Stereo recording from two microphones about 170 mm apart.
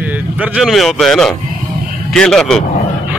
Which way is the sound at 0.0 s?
10° right (ahead or behind).